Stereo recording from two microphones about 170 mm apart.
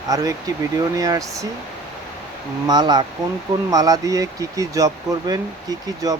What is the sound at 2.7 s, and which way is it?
Speech, 25° right (ahead or behind).